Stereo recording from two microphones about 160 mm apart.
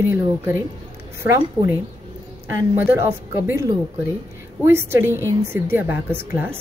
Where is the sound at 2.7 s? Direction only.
15° right (ahead or behind).